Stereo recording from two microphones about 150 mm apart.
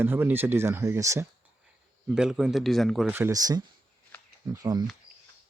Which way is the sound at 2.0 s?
5° right (ahead or behind).